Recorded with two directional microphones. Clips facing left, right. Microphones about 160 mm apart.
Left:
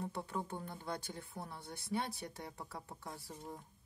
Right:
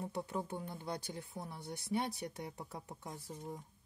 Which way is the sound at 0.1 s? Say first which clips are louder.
Right 2 dB; 15° right (ahead or behind).